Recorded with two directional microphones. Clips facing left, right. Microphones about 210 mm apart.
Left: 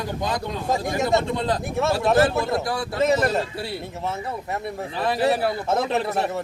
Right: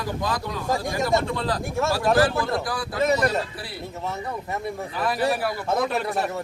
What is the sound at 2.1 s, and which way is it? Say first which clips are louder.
Speech: left 2 dB; 25° left (ahead or behind).